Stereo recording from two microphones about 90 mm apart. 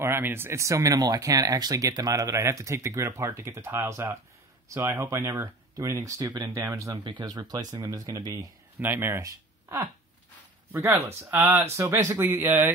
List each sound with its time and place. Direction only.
0.0 s speech: 25° right (ahead or behind)
7.2 s speech: 45° right (ahead or behind)
8.7 s speech: 20° right (ahead or behind)
11.7 s speech: 35° right (ahead or behind)
12.3 s speech: 20° right (ahead or behind)